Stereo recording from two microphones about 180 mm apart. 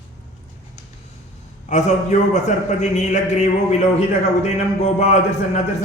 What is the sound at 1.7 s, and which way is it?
A man's voice, 40° left (ahead or behind).